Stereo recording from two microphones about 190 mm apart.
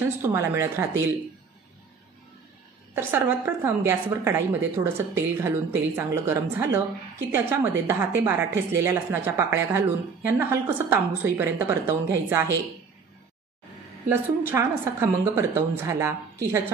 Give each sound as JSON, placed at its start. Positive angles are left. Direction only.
{"t": 0.2, "sound": "a woman's voice", "side_deg": -10}
{"t": 2.9, "sound": "a woman's voice", "side_deg": -10}
{"t": 14.0, "sound": "a woman's voice", "side_deg": -10}